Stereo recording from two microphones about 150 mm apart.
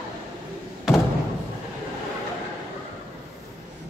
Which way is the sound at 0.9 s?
Centre (ahead or behind).